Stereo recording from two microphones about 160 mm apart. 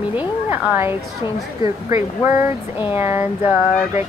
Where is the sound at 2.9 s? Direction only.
15° right (ahead or behind).